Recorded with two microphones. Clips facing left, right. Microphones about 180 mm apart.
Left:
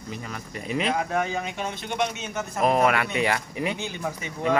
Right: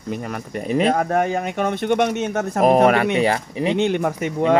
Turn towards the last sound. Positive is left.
turn(degrees=-60)  # may be behind; listen again after turning